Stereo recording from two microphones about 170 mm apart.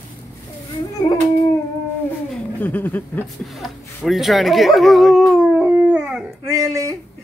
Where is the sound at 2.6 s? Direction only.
10° left (ahead or behind).